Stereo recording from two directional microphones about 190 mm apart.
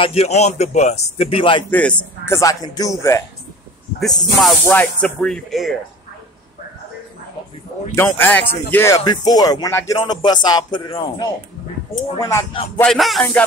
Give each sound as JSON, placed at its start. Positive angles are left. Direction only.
{"t": 0.0, "sound": "a man's voice", "side_deg": 30}
{"t": 1.7, "sound": "speech", "side_deg": 5}
{"t": 4.0, "sound": "speech", "side_deg": 0}
{"t": 7.9, "sound": "speech", "side_deg": 15}
{"t": 12.8, "sound": "speech", "side_deg": 0}